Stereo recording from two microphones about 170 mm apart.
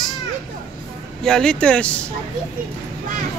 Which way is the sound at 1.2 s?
5° left (ahead or behind).